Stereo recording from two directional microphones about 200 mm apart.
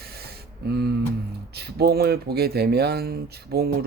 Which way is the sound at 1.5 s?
55° right (ahead or behind).